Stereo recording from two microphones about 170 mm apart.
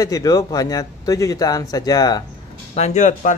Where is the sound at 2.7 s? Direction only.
40° left (ahead or behind).